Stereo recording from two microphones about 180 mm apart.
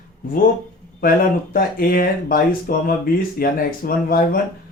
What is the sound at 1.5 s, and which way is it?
Speech, 55° left (ahead or behind).